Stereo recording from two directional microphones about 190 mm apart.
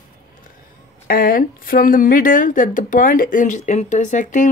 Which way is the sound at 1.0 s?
50° left (ahead or behind).